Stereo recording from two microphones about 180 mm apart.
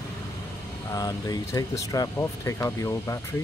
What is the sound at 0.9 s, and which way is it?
Speech, 20° left (ahead or behind).